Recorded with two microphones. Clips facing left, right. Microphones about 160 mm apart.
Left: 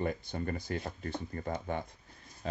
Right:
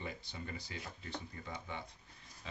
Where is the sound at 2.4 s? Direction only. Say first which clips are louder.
Left 12 dB; 45° left (ahead or behind).